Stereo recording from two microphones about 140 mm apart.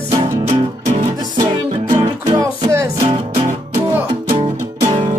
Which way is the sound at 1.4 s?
30° right (ahead or behind).